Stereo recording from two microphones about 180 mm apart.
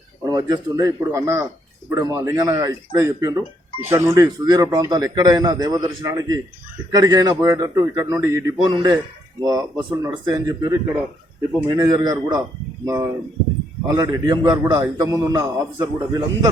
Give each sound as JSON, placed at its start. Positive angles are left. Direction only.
{"t": 0.3, "sound": "a man's voice", "side_deg": -20}